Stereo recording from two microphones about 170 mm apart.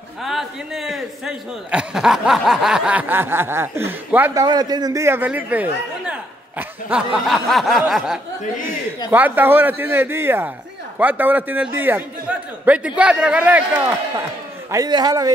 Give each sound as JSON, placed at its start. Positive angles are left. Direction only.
{"t": 0.2, "sound": "a man's voice", "side_deg": 0}
{"t": 14.7, "sound": "a man's voice", "side_deg": -25}